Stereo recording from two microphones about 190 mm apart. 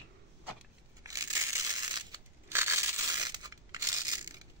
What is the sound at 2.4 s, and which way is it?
Crushing, 15° right (ahead or behind).